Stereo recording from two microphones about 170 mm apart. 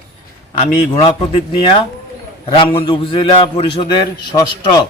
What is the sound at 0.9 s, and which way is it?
A man's voice, 30° left (ahead or behind).